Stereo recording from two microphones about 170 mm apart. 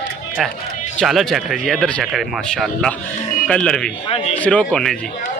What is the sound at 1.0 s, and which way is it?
Speech, centre (ahead or behind).